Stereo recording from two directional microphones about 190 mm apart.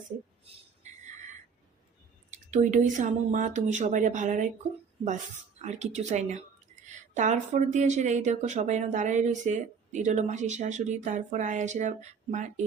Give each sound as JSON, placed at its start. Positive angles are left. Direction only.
{"t": 2.5, "sound": "speech", "side_deg": -40}
{"t": 5.6, "sound": "speech", "side_deg": -35}